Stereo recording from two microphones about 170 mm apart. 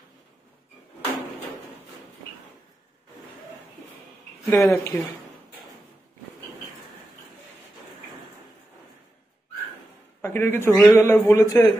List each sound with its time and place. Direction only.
4.5 s a man's voice: 15° left (ahead or behind)
10.2 s a man's voice: 15° left (ahead or behind)